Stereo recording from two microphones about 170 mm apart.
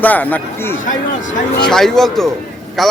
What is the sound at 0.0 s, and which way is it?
A man's voice, 10° left (ahead or behind).